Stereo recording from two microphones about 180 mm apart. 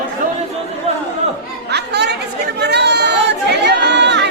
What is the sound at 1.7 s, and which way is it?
Chatter, 70° right (ahead or behind).